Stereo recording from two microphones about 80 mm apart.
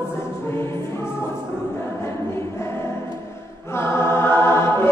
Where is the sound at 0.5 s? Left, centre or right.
Left.